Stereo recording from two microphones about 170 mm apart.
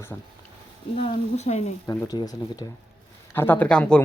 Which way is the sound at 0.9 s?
40° left (ahead or behind).